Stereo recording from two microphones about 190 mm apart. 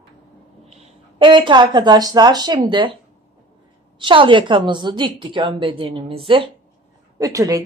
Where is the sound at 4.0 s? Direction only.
25° right (ahead or behind).